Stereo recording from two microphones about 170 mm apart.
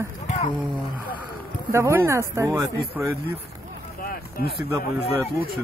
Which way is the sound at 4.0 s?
60° left (ahead or behind).